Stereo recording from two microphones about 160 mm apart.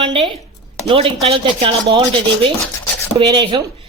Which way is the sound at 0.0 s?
35° right (ahead or behind).